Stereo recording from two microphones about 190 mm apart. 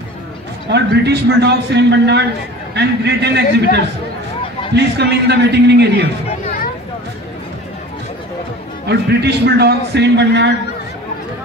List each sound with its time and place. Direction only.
0.7 s a man's voice: 60° right (ahead or behind)
4.7 s a man's voice: 60° right (ahead or behind)
8.8 s a man's voice: 60° right (ahead or behind)